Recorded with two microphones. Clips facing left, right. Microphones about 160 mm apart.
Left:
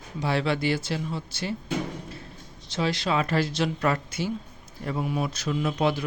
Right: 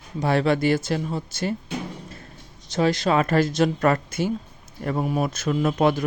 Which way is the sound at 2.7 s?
45° right (ahead or behind).